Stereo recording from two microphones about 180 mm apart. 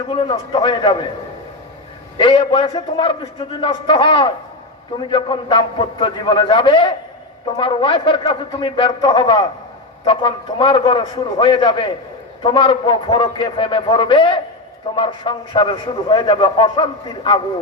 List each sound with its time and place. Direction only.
0.1 s a man's voice: 30° left (ahead or behind)
2.1 s a man's voice: 30° left (ahead or behind)